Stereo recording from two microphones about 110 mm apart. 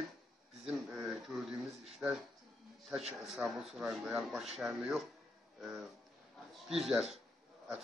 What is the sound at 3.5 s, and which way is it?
Speech, centre (ahead or behind).